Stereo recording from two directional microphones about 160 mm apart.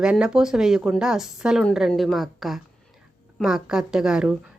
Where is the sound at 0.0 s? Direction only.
5° right (ahead or behind).